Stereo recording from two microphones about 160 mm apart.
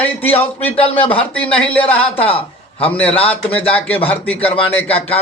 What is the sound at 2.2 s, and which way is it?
A man's voice, 35° left (ahead or behind).